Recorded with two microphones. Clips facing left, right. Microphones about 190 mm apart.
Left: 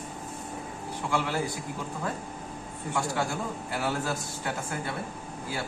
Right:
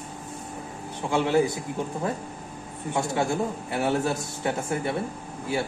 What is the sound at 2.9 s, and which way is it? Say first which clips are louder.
A man's voice: right 5 dB; 20° right (ahead or behind).